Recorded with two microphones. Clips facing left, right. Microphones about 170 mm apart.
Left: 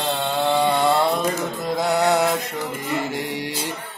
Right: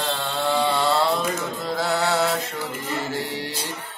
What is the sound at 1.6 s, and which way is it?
Music, 20° left (ahead or behind).